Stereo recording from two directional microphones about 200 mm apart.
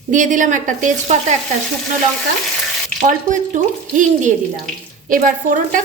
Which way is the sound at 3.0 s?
40° right (ahead or behind).